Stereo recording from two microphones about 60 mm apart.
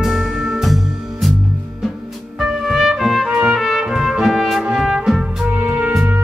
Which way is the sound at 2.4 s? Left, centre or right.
Centre.